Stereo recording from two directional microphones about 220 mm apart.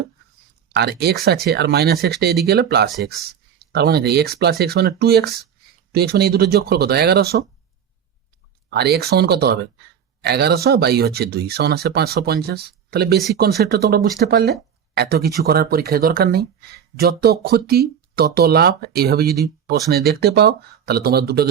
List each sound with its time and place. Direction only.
0.7 s speech: 50° right (ahead or behind)
8.7 s speech: 45° right (ahead or behind)